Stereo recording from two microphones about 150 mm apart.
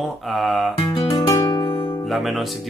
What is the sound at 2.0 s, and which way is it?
Speech, centre (ahead or behind).